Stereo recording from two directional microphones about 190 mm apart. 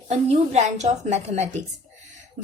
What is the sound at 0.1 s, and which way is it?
A woman's voice, 35° right (ahead or behind).